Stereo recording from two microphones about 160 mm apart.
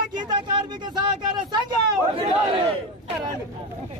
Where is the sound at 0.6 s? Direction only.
30° right (ahead or behind).